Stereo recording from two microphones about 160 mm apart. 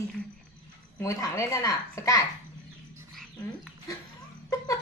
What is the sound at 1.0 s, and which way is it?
A woman's voice, 20° left (ahead or behind).